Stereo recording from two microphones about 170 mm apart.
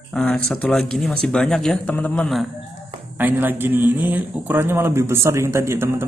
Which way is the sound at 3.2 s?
10° right (ahead or behind).